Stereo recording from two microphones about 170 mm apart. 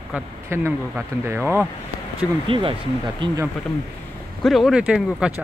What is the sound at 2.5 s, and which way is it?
Speech, 30° right (ahead or behind).